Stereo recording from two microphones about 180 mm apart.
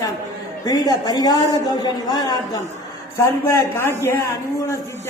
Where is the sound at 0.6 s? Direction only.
20° left (ahead or behind).